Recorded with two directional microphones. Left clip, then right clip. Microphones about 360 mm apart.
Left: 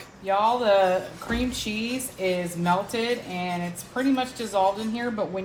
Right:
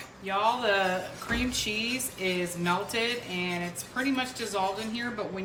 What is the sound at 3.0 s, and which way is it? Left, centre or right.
A woman's voice, centre.